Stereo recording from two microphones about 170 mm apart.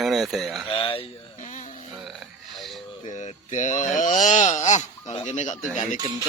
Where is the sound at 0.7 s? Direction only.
30° left (ahead or behind).